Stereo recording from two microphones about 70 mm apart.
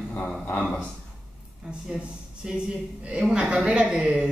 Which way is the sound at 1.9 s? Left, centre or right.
Centre.